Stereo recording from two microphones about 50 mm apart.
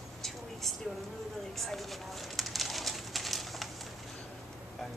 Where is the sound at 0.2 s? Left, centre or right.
Centre.